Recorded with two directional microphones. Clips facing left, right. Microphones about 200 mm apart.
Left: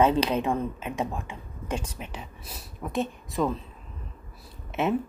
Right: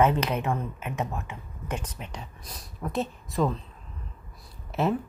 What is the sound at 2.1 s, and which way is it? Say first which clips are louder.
Speech: left 1 dB; 5° left (ahead or behind).